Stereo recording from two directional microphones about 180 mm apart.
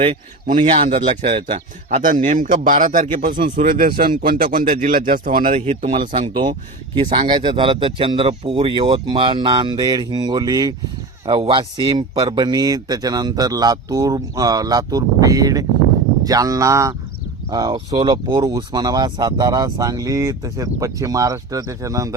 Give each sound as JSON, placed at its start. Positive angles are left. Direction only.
{"t": 0.0, "sound": "speech", "side_deg": -40}
{"t": 0.7, "sound": "speech", "side_deg": -30}
{"t": 2.0, "sound": "speech", "side_deg": -45}
{"t": 5.5, "sound": "speech", "side_deg": -35}